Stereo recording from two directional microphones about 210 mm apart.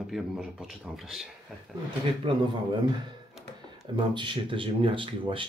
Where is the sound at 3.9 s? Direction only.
20° right (ahead or behind).